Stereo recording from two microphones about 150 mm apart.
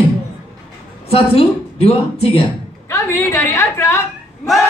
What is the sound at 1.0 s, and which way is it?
A woman's voice, 40° left (ahead or behind).